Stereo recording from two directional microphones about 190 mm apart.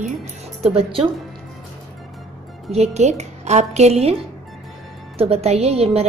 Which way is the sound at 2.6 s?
35° right (ahead or behind).